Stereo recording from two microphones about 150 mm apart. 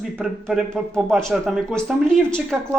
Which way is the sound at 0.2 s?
Centre (ahead or behind).